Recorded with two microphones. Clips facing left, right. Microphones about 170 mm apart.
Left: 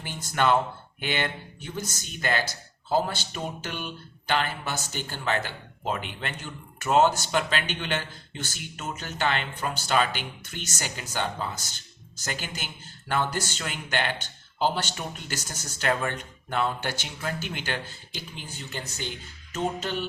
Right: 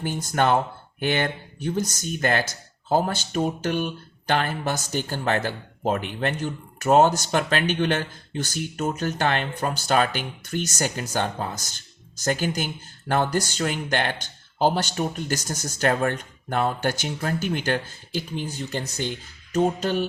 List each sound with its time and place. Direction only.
0.0 s speech: 45° right (ahead or behind)